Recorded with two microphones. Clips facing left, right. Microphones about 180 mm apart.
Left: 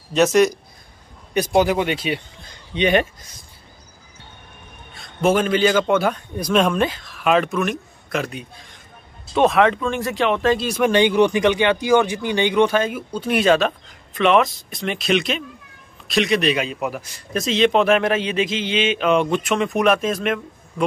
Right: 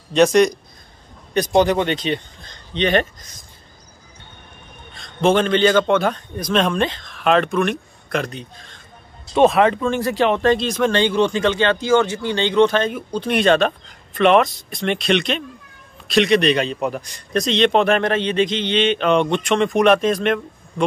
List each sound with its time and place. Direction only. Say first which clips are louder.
0.1 s speech: right 2 dB; 5° left (ahead or behind)
4.9 s a man's voice: right 2 dB; 5° left (ahead or behind)
9.5 s speech: right 1 dB; 30° right (ahead or behind)
10.5 s speech: even; 10° left (ahead or behind)